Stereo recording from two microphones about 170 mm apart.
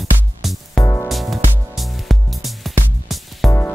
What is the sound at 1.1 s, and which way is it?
Music, centre (ahead or behind).